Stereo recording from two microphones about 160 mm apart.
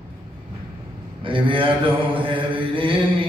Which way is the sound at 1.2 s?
30° right (ahead or behind).